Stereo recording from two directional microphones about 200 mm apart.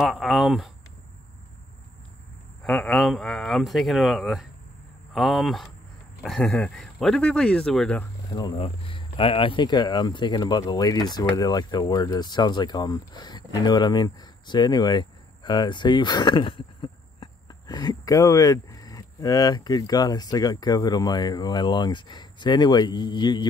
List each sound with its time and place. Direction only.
0.0 s speech: centre (ahead or behind)
2.6 s speech: 5° left (ahead or behind)
8.3 s speech: 20° left (ahead or behind)